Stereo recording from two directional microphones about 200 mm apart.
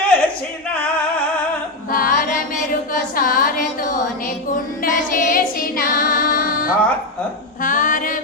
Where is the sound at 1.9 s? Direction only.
45° left (ahead or behind).